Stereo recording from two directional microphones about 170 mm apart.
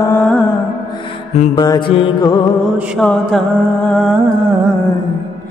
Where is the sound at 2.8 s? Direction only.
5° right (ahead or behind).